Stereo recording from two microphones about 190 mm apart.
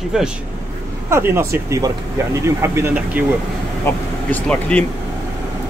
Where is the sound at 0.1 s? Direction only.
5° right (ahead or behind).